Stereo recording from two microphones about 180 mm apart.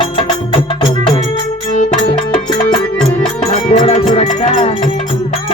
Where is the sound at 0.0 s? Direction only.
30° left (ahead or behind).